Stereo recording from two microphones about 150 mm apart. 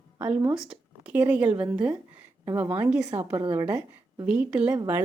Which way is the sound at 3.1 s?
35° right (ahead or behind).